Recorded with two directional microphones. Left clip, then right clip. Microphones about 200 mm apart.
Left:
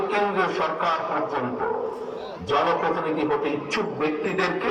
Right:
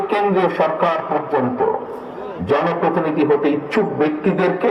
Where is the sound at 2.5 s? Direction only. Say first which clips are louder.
Right 4 dB; 50° right (ahead or behind).